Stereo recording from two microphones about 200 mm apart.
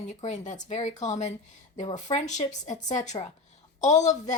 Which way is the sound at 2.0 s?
35° left (ahead or behind).